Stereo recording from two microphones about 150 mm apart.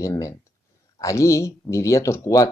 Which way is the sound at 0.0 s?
20° left (ahead or behind).